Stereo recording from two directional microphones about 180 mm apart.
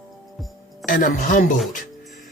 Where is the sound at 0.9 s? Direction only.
50° left (ahead or behind).